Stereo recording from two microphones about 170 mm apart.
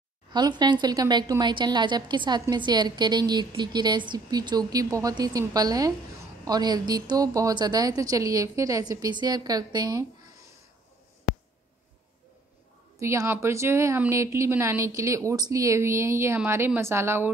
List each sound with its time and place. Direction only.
0.3 s a woman's voice: 25° right (ahead or behind)
13.0 s a woman's voice: 15° right (ahead or behind)